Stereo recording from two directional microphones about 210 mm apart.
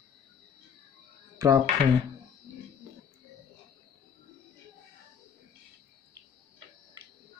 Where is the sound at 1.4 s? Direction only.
15° right (ahead or behind).